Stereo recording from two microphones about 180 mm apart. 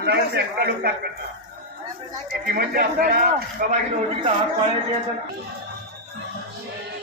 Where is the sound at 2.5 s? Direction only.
55° right (ahead or behind).